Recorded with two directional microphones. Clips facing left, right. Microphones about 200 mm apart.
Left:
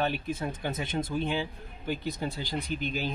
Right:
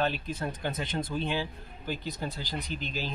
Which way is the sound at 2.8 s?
55° left (ahead or behind).